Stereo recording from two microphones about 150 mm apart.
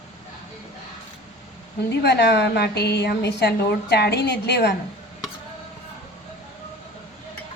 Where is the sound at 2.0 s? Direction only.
90° left.